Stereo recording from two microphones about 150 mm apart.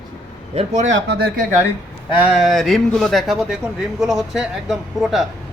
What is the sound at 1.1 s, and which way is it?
Speech, 90° right.